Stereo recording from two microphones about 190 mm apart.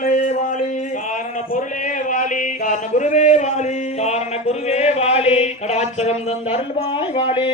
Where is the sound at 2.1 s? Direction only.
40° left (ahead or behind).